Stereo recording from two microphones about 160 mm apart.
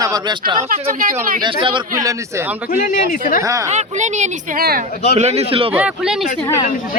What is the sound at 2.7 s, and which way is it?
Speech, 60° left (ahead or behind).